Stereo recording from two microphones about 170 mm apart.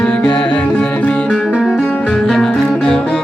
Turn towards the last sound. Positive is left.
turn(degrees=5)  # may be behind; listen again after turning